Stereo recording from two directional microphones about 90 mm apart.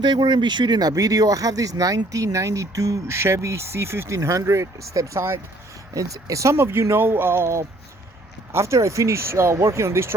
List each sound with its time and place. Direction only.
0.0 s speech: 55° right (ahead or behind); by 10.2 s 30° right (ahead or behind)